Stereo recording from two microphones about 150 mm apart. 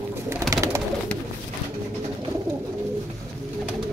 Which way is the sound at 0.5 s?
20° right (ahead or behind).